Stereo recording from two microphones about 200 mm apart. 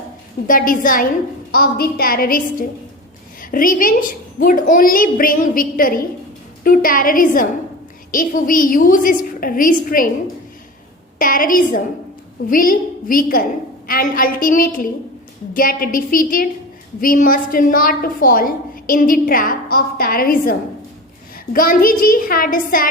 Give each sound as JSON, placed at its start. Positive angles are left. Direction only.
{"t": 0.4, "sound": "a woman's voice", "side_deg": 45}
{"t": 11.2, "sound": "a woman's voice", "side_deg": 45}